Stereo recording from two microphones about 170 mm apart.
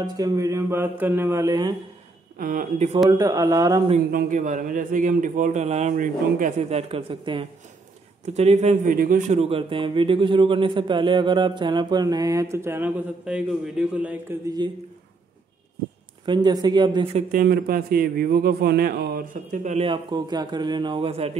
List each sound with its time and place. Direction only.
0.0 s mantra: 20° right (ahead or behind)
2.3 s a man's voice: 60° right (ahead or behind)
3.1 s a man's voice: 20° right (ahead or behind)
4.1 s a man's voice: 55° right (ahead or behind)
9.4 s a man's voice: 35° right (ahead or behind); by 14.2 s 10° right (ahead or behind)
14.4 s a man's voice: 25° right (ahead or behind)
16.3 s a man's voice: 25° right (ahead or behind)
17.3 s a man's voice: 60° right (ahead or behind); by 21.3 s 35° right (ahead or behind)